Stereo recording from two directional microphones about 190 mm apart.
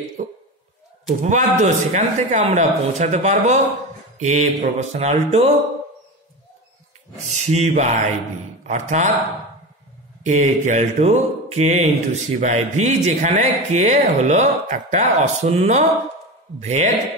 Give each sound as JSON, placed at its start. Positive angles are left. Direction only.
{"t": 1.2, "sound": "speech", "side_deg": -40}
{"t": 7.2, "sound": "speech", "side_deg": -35}
{"t": 10.2, "sound": "speech", "side_deg": -40}